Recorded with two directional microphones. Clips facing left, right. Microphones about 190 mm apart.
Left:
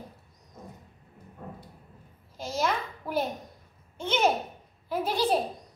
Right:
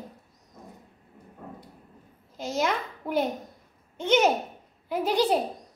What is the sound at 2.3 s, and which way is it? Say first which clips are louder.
Speech: right 3 dB; 20° right (ahead or behind).